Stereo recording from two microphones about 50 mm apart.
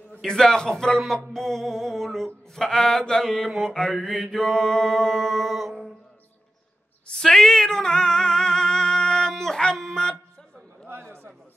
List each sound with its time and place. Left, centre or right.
0.2 s speech: centre
2.5 s mantra: centre
7.1 s singing: centre
9.3 s speech: centre
10.9 s a sound: right